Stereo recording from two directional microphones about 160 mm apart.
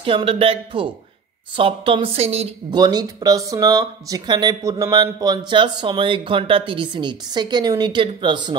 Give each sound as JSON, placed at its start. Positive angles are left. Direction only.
{"t": 0.0, "sound": "speech", "side_deg": -35}
{"t": 2.7, "sound": "speech", "side_deg": -25}